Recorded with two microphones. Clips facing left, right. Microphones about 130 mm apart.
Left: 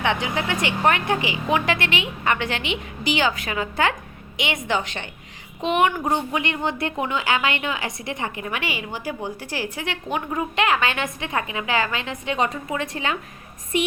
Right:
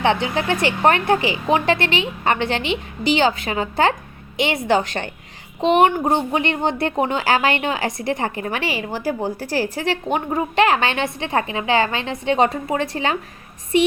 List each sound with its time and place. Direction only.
0.0 s speech: 30° right (ahead or behind)